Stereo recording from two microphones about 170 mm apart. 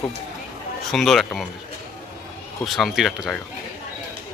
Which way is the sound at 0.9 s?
Centre (ahead or behind).